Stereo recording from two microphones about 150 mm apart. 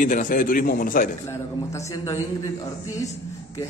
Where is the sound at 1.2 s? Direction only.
20° left (ahead or behind).